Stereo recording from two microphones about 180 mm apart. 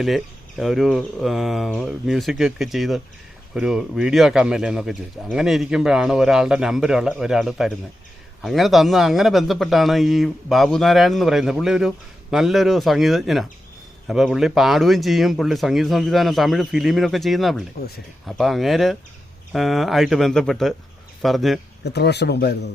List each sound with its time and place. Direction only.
0.0 s a man's voice: centre (ahead or behind)
21.8 s speech: 65° left (ahead or behind)